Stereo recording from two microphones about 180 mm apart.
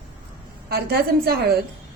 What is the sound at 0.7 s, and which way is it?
Speech, 60° right (ahead or behind).